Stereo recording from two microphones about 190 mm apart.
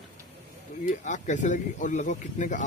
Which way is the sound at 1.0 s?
40° left (ahead or behind).